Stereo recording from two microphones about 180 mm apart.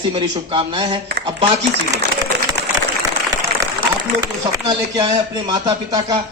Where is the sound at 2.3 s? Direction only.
70° right (ahead or behind).